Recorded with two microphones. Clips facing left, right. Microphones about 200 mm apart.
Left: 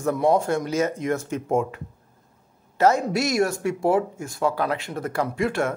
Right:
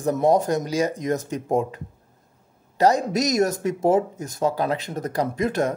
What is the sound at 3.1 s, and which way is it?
Speech, 40° right (ahead or behind).